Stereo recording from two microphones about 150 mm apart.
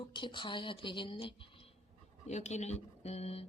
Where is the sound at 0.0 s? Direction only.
35° left (ahead or behind).